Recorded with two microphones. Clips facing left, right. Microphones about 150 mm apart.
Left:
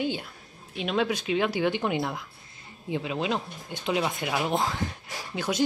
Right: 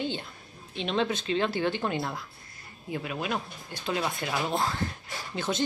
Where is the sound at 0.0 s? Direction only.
10° left (ahead or behind).